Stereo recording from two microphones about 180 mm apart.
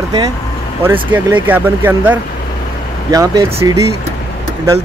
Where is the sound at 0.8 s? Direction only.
10° right (ahead or behind).